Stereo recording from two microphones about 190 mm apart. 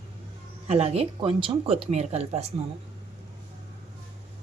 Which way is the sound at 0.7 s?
30° right (ahead or behind).